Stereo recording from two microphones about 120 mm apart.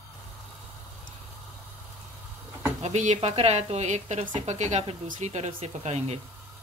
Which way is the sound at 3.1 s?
60° right (ahead or behind).